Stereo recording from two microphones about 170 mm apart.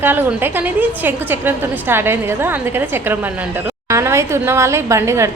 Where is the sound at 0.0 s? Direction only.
10° right (ahead or behind).